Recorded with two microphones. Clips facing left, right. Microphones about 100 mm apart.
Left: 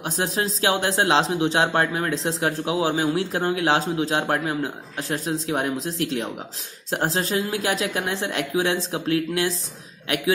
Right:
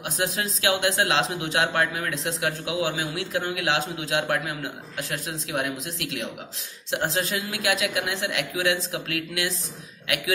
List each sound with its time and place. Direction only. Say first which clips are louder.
0.0 s a man's voice: left 3 dB; 35° left (ahead or behind)